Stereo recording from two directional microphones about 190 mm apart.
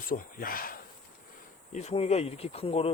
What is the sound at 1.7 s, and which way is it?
Speech, 35° left (ahead or behind).